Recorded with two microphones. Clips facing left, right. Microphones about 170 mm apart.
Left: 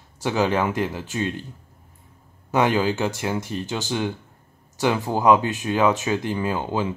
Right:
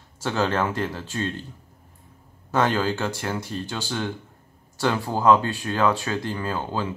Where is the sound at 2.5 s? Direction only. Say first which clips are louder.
Left 2 dB; 15° left (ahead or behind).